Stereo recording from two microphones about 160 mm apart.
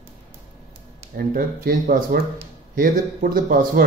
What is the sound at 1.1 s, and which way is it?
Speech, 65° right (ahead or behind).